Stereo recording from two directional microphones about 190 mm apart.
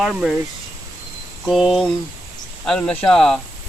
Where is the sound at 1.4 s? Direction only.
Centre (ahead or behind).